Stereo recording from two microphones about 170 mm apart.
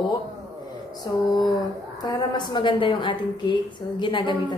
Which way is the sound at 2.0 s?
25° left (ahead or behind).